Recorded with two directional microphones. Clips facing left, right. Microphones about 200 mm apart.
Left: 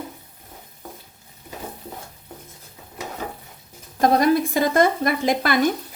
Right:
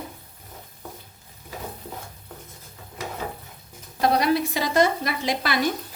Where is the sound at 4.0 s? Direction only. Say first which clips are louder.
Left 4 dB; 45° left (ahead or behind).